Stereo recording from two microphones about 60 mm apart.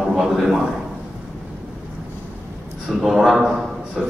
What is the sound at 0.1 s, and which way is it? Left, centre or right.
Speech, centre.